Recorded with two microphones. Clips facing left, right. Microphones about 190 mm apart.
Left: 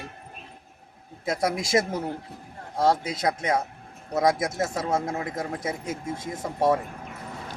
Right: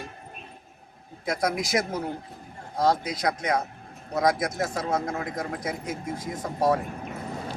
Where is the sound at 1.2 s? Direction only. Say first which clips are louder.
Left 1 dB; 25° left (ahead or behind).